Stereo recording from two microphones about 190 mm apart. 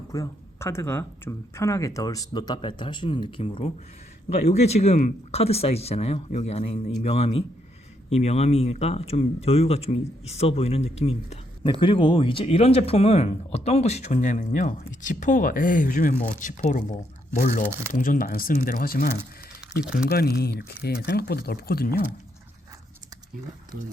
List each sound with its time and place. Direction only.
0.1 s speech: 15° left (ahead or behind); by 22.0 s 55° left (ahead or behind)